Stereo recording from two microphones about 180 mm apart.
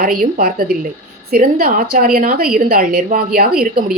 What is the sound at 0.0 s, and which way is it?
A woman's voice, 55° right (ahead or behind).